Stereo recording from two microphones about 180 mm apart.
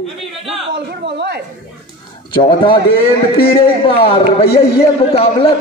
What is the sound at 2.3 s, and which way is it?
A man's voice, 25° left (ahead or behind).